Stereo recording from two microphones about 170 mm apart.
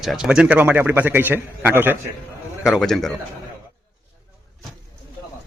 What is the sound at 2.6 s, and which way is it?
Speech, centre (ahead or behind).